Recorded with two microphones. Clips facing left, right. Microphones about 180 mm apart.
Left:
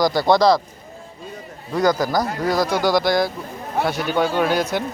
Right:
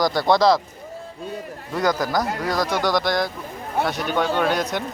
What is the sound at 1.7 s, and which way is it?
Speech, centre (ahead or behind).